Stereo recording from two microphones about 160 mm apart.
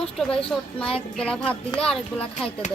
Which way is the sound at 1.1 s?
5° left (ahead or behind).